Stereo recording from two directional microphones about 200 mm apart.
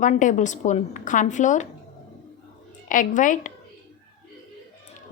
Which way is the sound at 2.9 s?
40° left (ahead or behind).